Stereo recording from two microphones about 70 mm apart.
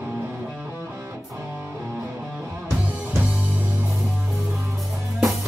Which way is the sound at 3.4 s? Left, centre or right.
Right.